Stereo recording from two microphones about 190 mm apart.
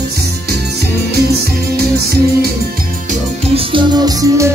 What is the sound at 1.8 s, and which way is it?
Music, 55° right (ahead or behind).